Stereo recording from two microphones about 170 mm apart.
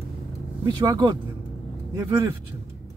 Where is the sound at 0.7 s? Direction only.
25° right (ahead or behind).